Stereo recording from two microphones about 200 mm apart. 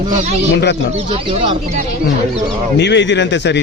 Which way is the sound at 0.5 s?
55° left (ahead or behind).